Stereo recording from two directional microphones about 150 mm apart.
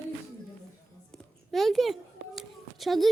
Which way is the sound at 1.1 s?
Centre (ahead or behind).